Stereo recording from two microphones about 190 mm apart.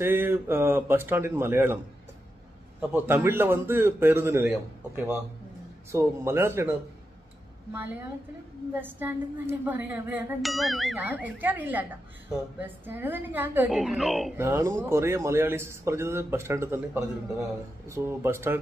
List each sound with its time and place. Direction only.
0.0 s a man's voice: 10° right (ahead or behind)
2.9 s a man's voice: 10° right (ahead or behind)
8.7 s a man's voice: 10° right (ahead or behind)
10.4 s a man's voice: centre (ahead or behind)
14.3 s a man's voice: 15° right (ahead or behind)